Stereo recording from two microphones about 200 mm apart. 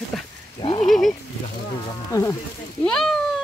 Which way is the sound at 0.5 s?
25° left (ahead or behind).